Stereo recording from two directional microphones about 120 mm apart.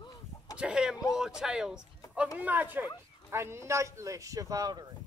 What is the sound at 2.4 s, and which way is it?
A man's voice, 15° right (ahead or behind).